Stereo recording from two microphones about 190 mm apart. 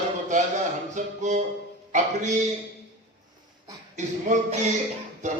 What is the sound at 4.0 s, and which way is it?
A man's voice, 40° right (ahead or behind).